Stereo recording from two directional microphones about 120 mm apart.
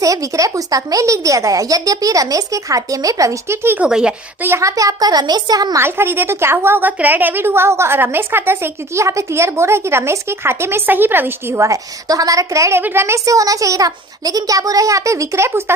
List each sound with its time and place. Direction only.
0.0 s a woman's voice: 30° right (ahead or behind)
3.8 s speech: 5° right (ahead or behind)
4.4 s a woman's voice: 25° right (ahead or behind)
5.8 s a woman's voice: 20° right (ahead or behind)